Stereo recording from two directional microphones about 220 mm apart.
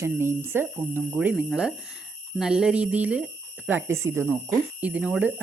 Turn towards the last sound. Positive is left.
turn(degrees=-5)  # may be behind; listen again after turning